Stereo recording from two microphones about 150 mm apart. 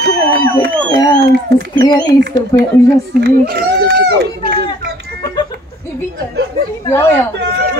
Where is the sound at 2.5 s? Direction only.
25° left (ahead or behind).